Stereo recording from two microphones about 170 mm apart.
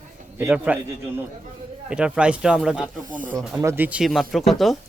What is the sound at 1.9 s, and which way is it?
Speech, 5° right (ahead or behind).